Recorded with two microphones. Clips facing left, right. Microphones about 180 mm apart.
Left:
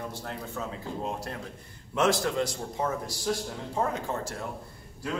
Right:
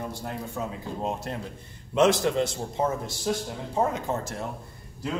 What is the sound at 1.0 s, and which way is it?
A man's voice, 20° right (ahead or behind).